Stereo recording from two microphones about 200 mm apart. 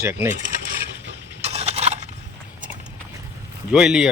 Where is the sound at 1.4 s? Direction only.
30° right (ahead or behind).